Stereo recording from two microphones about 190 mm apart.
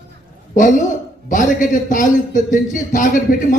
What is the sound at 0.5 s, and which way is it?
A woman's voice, 40° left (ahead or behind).